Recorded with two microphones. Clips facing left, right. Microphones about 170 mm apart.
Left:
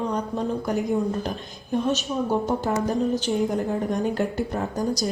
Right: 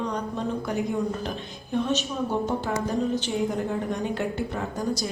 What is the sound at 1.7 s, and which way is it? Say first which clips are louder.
Speech: left 2 dB; 40° left (ahead or behind).